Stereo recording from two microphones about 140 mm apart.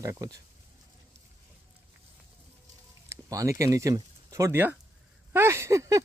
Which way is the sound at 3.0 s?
20° right (ahead or behind).